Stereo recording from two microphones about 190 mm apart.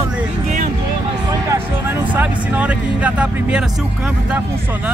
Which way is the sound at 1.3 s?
15° right (ahead or behind).